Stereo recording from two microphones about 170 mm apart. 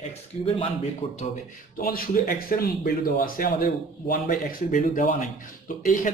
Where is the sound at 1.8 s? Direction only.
55° left (ahead or behind).